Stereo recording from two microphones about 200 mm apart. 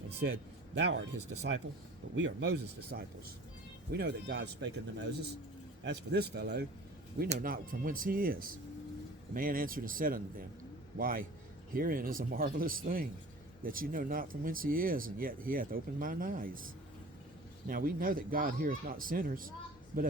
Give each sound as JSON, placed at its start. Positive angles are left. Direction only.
{"t": 0.2, "sound": "speech", "side_deg": -60}
{"t": 7.3, "sound": "speech", "side_deg": -45}
{"t": 17.7, "sound": "speech", "side_deg": -45}